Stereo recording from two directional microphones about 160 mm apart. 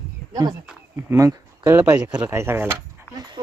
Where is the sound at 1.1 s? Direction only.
20° right (ahead or behind).